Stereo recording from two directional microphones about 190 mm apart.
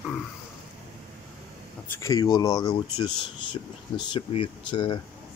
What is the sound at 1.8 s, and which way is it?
Speech, 15° left (ahead or behind).